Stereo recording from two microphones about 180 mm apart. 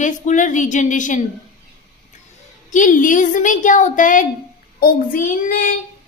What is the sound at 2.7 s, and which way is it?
A woman's voice, 45° left (ahead or behind).